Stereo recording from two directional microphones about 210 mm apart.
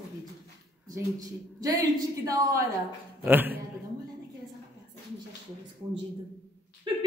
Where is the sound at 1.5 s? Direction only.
15° right (ahead or behind).